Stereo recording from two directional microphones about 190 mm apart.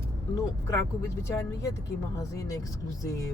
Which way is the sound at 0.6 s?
15° left (ahead or behind).